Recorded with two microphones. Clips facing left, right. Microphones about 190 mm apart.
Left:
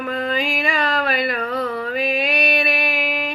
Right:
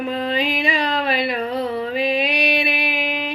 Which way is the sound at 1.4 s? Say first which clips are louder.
Right 1 dB; 20° right (ahead or behind).